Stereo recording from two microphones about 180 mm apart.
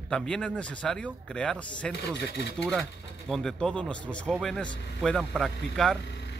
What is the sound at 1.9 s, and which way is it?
Speech, 70° left (ahead or behind).